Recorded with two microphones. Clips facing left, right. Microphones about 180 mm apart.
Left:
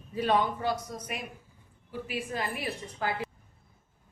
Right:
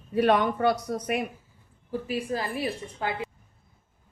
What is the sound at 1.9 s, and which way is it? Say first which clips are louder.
A woman's voice: right 6 dB; 40° right (ahead or behind).